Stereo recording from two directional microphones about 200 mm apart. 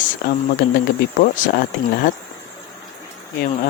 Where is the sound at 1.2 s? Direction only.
45° left (ahead or behind).